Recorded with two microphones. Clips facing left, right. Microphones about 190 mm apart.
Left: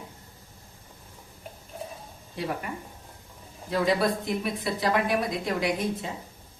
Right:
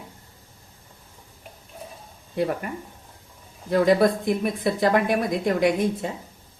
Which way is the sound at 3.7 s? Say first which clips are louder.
Right 6 dB; 50° right (ahead or behind).